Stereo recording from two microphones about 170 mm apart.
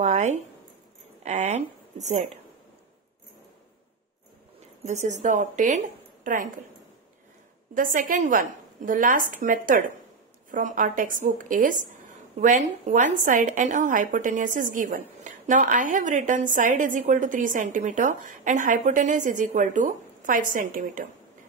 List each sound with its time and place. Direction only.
0.0 s zipper: 45° right (ahead or behind)
1.2 s a woman's voice: 40° right (ahead or behind)
4.8 s a woman's voice: 45° right (ahead or behind)
7.7 s a woman's voice: 55° right (ahead or behind)